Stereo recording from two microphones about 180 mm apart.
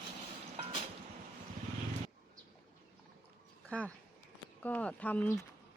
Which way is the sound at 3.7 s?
5° left (ahead or behind).